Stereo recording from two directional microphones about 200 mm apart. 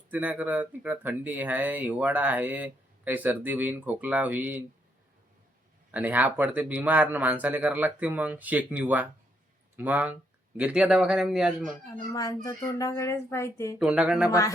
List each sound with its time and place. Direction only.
0.1 s speech: 10° right (ahead or behind)
5.9 s a man's voice: 10° right (ahead or behind)
11.9 s a child's voice: 20° left (ahead or behind)
13.7 s a man's voice: 5° right (ahead or behind)
14.3 s a child's voice: 15° left (ahead or behind)